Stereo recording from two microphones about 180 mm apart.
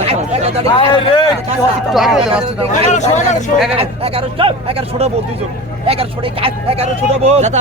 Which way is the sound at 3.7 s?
30° right (ahead or behind).